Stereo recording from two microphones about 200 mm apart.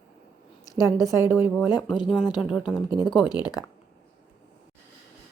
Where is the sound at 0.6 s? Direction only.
15° left (ahead or behind).